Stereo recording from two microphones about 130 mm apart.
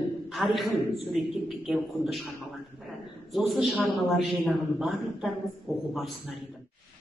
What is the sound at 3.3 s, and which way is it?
A man's voice, centre (ahead or behind).